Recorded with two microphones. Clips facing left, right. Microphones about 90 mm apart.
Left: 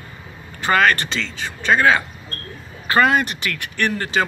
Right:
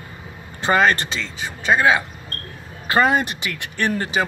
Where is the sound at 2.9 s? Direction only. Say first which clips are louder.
Left 1 dB; 25° right (ahead or behind).